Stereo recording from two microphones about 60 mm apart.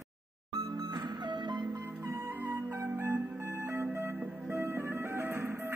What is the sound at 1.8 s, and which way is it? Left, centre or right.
Music, right.